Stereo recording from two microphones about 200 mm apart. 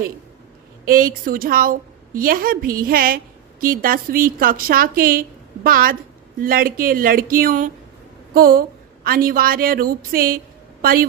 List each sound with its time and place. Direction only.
0.9 s a woman's voice: 45° right (ahead or behind)